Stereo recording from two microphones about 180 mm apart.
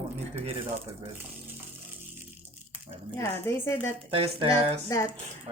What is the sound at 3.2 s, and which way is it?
Speech, 15° left (ahead or behind).